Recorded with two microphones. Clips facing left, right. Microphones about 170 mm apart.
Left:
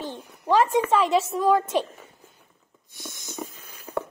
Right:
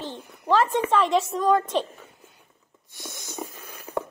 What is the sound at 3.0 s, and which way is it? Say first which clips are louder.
Snort: right 1 dB; 60° right (ahead or behind).